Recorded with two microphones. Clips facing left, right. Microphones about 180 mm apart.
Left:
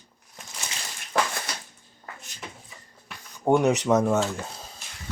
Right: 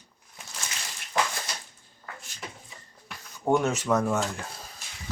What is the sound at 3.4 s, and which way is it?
Speech, 15° left (ahead or behind).